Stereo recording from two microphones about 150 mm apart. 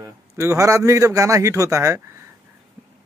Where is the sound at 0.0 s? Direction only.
20° right (ahead or behind).